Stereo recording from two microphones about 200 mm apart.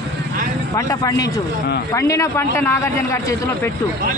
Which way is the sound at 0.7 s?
15° left (ahead or behind).